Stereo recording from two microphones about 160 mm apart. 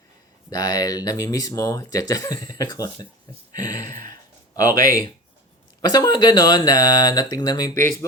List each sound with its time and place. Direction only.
0.5 s speech: 25° left (ahead or behind)